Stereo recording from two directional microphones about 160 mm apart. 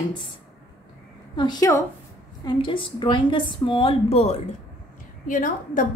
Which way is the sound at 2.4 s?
30° left (ahead or behind).